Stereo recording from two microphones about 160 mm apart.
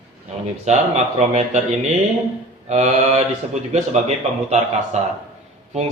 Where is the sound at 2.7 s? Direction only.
45° right (ahead or behind).